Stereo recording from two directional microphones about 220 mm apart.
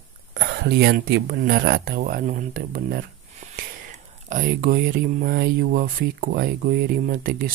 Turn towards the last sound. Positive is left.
turn(degrees=-40)  # may be behind; listen again after turning